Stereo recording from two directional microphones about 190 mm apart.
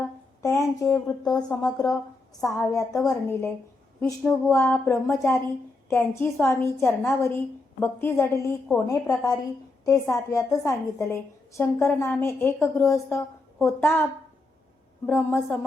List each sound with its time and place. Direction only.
0.4 s speech: 15° left (ahead or behind)
1.3 s speech: 5° left (ahead or behind)
1.6 s speech: 20° left (ahead or behind)
3.1 s a woman's voice: 15° left (ahead or behind)
15.0 s a woman's voice: 10° left (ahead or behind)